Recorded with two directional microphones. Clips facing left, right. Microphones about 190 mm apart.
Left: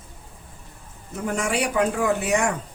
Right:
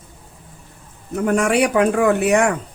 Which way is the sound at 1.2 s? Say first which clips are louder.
Right 8 dB; 60° right (ahead or behind).